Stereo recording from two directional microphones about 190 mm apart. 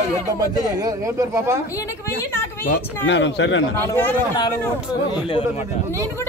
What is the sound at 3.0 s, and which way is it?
Speech, 70° left (ahead or behind).